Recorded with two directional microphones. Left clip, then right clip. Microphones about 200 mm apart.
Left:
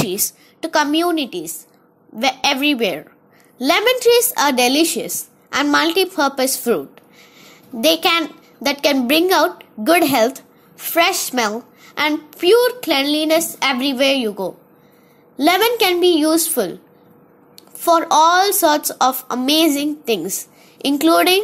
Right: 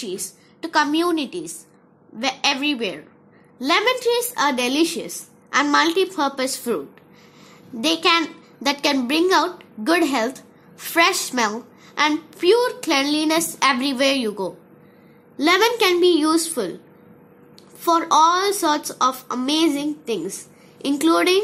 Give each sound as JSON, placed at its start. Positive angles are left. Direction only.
{"t": 0.6, "sound": "a child's voice", "side_deg": 15}
{"t": 7.8, "sound": "a child's voice", "side_deg": 15}
{"t": 17.7, "sound": "a woman's voice", "side_deg": 20}